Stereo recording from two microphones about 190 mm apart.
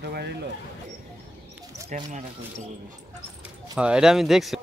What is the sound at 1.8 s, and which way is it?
Speech, 40° right (ahead or behind).